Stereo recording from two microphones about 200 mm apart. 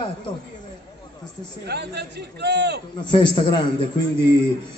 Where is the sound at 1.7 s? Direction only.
55° right (ahead or behind).